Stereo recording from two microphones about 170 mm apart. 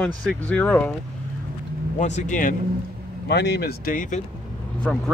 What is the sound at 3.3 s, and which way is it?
Speech, 75° left (ahead or behind).